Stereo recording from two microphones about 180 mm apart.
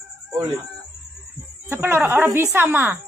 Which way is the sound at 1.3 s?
10° right (ahead or behind).